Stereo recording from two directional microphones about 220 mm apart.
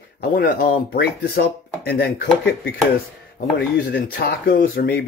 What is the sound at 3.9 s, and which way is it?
Speech, 45° left (ahead or behind).